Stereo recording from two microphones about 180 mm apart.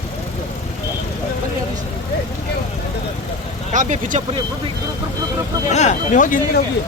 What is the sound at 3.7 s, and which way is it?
Speech, 45° right (ahead or behind).